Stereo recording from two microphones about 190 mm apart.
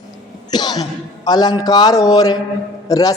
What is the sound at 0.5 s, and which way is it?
A man's voice, 20° left (ahead or behind).